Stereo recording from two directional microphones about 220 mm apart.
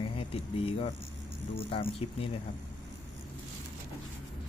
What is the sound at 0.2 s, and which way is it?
Speech, 25° left (ahead or behind).